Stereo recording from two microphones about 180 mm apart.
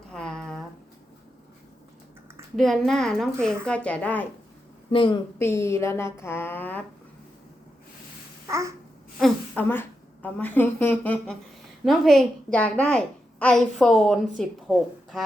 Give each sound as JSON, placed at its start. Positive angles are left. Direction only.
{"t": 0.1, "sound": "a sound", "side_deg": 5}
{"t": 2.6, "sound": "a child's voice", "side_deg": 0}
{"t": 4.9, "sound": "a woman's voice", "side_deg": 30}
{"t": 5.4, "sound": "a woman's voice", "side_deg": 15}
{"t": 8.4, "sound": "babbling", "side_deg": -15}
{"t": 9.1, "sound": "a sound", "side_deg": 0}
{"t": 10.2, "sound": "a woman's voice", "side_deg": 10}